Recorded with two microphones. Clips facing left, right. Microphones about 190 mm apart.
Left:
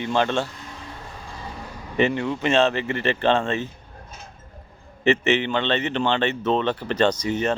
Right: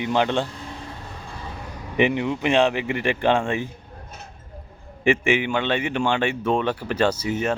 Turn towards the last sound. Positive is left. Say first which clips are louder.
# left 1 dB
turn(degrees=-5)  # may be behind; listen again after turning